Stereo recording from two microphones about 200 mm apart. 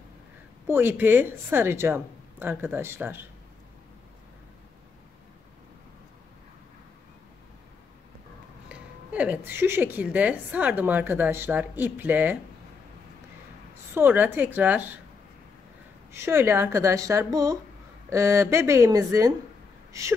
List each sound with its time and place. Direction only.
0.7 s speech: 10° right (ahead or behind)
8.6 s speech: 5° right (ahead or behind)
13.9 s speech: 10° right (ahead or behind)
16.1 s speech: 10° right (ahead or behind)
19.9 s a sound: 15° right (ahead or behind)